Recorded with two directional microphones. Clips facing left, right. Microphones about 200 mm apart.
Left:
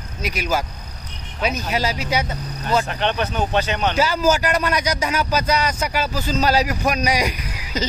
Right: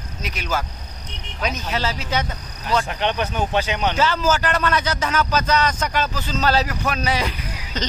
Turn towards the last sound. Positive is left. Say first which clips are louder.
# left 2 dB
turn(degrees=10)  # may be behind; listen again after turning